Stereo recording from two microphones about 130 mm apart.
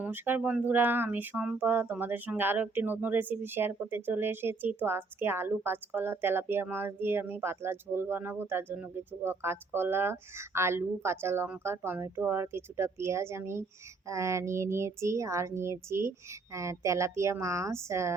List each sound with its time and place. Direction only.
0.0 s a woman's voice: 15° right (ahead or behind)